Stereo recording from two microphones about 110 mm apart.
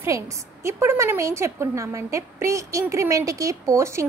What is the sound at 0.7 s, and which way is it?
A woman's voice, 25° right (ahead or behind).